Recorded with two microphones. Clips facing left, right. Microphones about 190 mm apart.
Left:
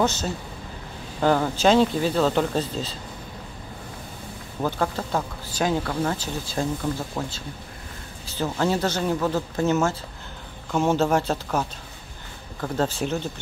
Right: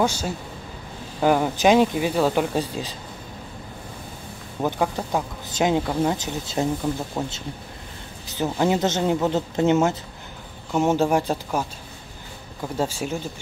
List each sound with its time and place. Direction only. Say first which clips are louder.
0.0 s speech: right 1 dB; 10° right (ahead or behind)
4.6 s speech: right 2 dB; 15° right (ahead or behind)
12.6 s speech: left 1 dB; 10° right (ahead or behind)